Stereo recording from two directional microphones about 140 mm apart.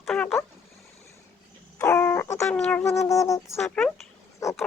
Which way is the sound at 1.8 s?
15° left (ahead or behind).